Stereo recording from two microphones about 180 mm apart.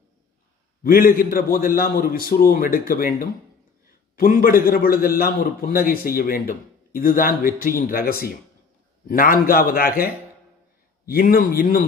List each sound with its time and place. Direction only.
0.8 s a man's voice: 55° left (ahead or behind)
11.1 s a man's voice: 55° left (ahead or behind)